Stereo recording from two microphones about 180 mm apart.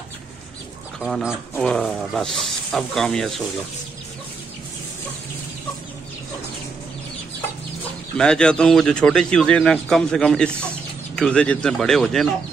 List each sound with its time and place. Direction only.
1.0 s speech: centre (ahead or behind)
8.2 s speech: 5° left (ahead or behind)